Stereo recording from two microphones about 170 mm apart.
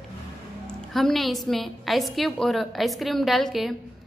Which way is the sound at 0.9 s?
Centre (ahead or behind).